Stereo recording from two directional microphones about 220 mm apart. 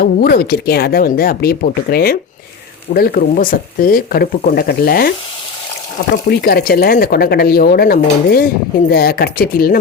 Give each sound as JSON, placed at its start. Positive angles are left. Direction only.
{"t": 0.0, "sound": "speech", "side_deg": 45}
{"t": 6.2, "sound": "speech", "side_deg": 45}